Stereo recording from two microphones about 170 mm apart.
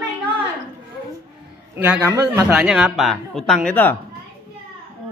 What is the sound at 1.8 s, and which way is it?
Speech, 15° right (ahead or behind).